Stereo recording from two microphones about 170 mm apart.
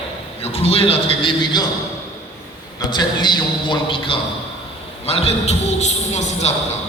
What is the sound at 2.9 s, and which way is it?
A man's voice, 25° left (ahead or behind).